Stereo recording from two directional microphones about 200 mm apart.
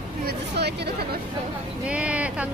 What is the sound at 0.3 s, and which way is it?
Speech, 55° right (ahead or behind).